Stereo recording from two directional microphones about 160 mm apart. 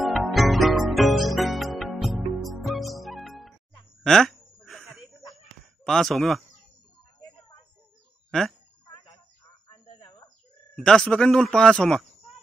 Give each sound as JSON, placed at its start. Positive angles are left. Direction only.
{"t": 0.0, "sound": "music", "side_deg": 0}
{"t": 4.0, "sound": "a sound", "side_deg": 5}
{"t": 5.9, "sound": "speech", "side_deg": 0}
{"t": 8.3, "sound": "fowl", "side_deg": 0}
{"t": 9.8, "sound": "bird", "side_deg": 30}
{"t": 10.8, "sound": "speech", "side_deg": 5}